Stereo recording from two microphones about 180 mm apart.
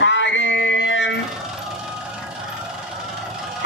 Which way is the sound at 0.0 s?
90° left.